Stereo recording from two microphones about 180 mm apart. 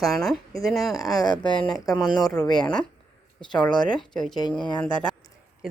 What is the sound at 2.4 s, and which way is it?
Speech, 25° left (ahead or behind).